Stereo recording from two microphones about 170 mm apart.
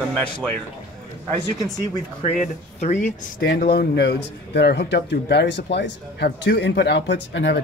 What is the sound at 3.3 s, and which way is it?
Speech, 65° left (ahead or behind).